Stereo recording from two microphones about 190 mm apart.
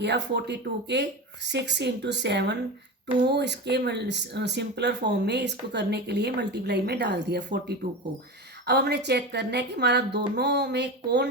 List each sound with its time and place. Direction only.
0.0 s speech: 60° right (ahead or behind)
8.6 s speech: 60° right (ahead or behind)